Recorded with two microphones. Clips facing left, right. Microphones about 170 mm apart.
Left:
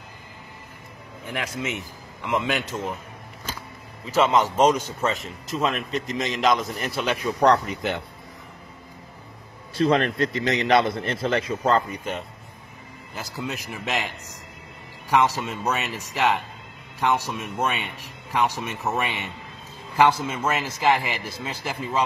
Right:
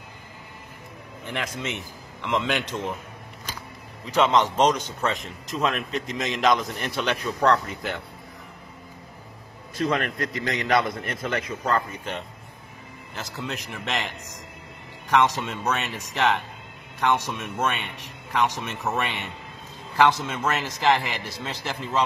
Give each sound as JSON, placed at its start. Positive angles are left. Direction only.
{"t": 1.2, "sound": "a man's voice", "side_deg": 10}
{"t": 4.0, "sound": "a man's voice", "side_deg": 5}
{"t": 7.2, "sound": "a man's voice", "side_deg": 15}
{"t": 9.8, "sound": "a man's voice", "side_deg": 30}
{"t": 11.9, "sound": "a man's voice", "side_deg": 10}
{"t": 15.0, "sound": "a man's voice", "side_deg": 10}